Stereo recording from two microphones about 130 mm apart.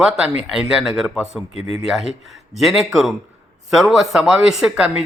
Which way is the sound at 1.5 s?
50° left (ahead or behind).